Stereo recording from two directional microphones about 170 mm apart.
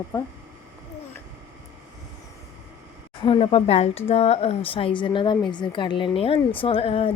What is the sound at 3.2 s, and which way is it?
Speech, 30° left (ahead or behind).